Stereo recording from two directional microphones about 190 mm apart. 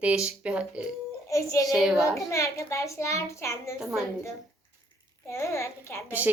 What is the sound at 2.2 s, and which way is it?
A child's voice, 15° left (ahead or behind).